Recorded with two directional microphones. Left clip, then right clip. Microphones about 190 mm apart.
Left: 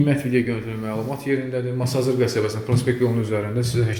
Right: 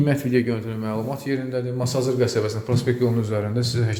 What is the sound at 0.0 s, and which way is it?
A man's voice, 25° right (ahead or behind).